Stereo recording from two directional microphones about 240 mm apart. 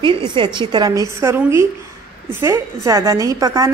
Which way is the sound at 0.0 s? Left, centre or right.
Centre.